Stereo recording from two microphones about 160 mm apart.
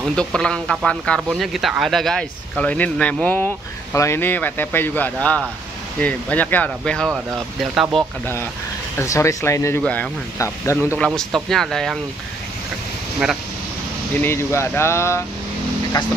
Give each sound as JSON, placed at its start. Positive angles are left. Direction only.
{"t": 0.0, "sound": "speech", "side_deg": 5}
{"t": 7.1, "sound": "speech", "side_deg": -5}
{"t": 8.9, "sound": "speech", "side_deg": 20}
{"t": 11.1, "sound": "speech", "side_deg": 0}
{"t": 14.2, "sound": "speech", "side_deg": 15}